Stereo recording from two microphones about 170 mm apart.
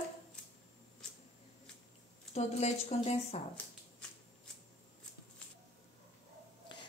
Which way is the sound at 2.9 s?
40° left (ahead or behind).